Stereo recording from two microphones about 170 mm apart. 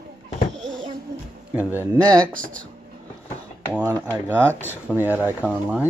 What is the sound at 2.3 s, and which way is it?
Speech, 55° right (ahead or behind).